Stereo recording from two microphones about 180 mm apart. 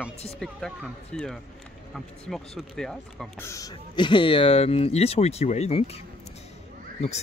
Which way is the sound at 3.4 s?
15° left (ahead or behind).